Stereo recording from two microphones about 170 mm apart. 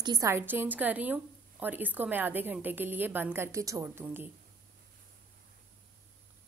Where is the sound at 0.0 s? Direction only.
20° right (ahead or behind).